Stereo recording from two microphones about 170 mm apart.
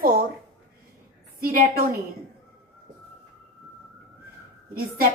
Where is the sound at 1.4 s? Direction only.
55° right (ahead or behind).